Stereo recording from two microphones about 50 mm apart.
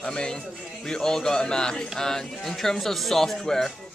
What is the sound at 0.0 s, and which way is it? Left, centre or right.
Speech, centre.